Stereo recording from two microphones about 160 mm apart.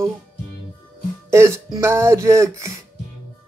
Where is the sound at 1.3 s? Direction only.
15° right (ahead or behind).